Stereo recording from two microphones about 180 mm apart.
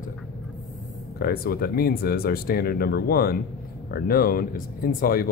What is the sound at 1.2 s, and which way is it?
Speech, 60° left (ahead or behind).